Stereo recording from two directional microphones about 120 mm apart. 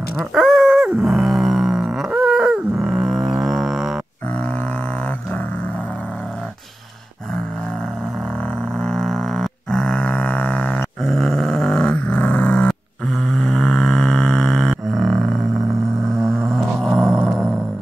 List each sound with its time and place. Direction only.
0.2 s dog: centre (ahead or behind)
1.0 s growling: centre (ahead or behind)
3.4 s livestock: centre (ahead or behind)
8.7 s grunt: 5° left (ahead or behind)
10.8 s grunt: centre (ahead or behind)
16.5 s a sound: centre (ahead or behind)